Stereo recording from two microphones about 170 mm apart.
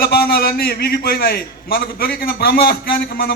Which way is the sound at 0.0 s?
65° left (ahead or behind).